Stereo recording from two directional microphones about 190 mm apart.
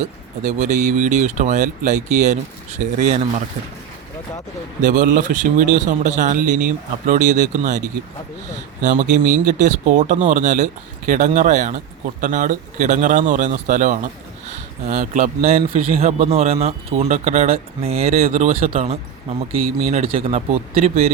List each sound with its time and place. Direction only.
0.0 s speech: 40° right (ahead or behind)
4.8 s speech: 40° right (ahead or behind)